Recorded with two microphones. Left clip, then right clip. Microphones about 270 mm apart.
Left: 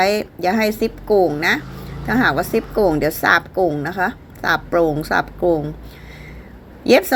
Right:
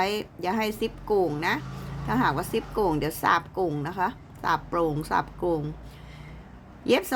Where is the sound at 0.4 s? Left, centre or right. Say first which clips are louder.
Left 10 dB; right.